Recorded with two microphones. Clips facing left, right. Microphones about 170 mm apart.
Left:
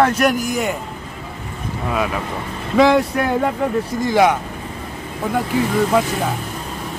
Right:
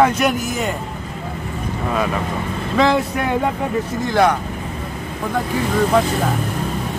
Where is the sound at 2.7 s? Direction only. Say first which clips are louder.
Left 3 dB; 5° left (ahead or behind).